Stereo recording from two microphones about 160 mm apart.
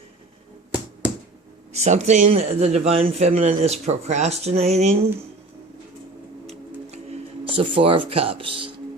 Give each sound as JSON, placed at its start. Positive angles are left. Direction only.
{"t": 1.7, "sound": "a man's voice", "side_deg": -45}
{"t": 6.5, "sound": "music", "side_deg": -40}